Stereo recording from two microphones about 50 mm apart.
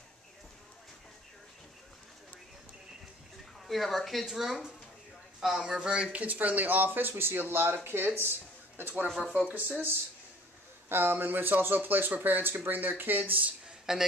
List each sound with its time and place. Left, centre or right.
3.6 s speech: centre
5.7 s speech: centre
6.1 s speech: right
10.9 s speech: right
13.9 s speech: centre